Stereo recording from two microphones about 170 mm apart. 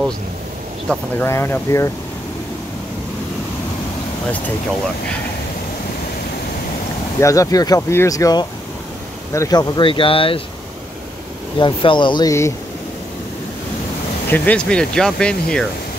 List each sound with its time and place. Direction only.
0.8 s speech: 15° left (ahead or behind)
7.2 s speech: 20° left (ahead or behind)
11.6 s speech: 30° left (ahead or behind)
14.3 s speech: 10° left (ahead or behind)